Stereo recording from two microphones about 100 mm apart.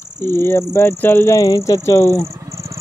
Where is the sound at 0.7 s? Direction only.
20° left (ahead or behind).